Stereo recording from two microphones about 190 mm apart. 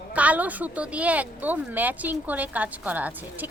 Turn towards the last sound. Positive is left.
turn(degrees=-10)  # may be behind; listen again after turning